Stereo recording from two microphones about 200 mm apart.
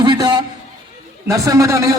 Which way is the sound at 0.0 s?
20° right (ahead or behind).